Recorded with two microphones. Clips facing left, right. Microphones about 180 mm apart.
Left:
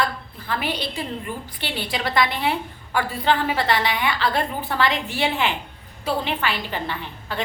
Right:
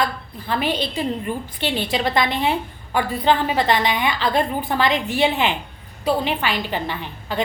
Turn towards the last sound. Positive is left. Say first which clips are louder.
# right 4 dB
turn(degrees=-15)  # may be behind; listen again after turning